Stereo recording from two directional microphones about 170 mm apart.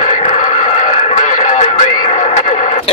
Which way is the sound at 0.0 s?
40° left (ahead or behind).